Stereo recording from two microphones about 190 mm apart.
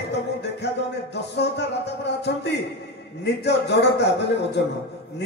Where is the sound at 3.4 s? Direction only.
65° left (ahead or behind).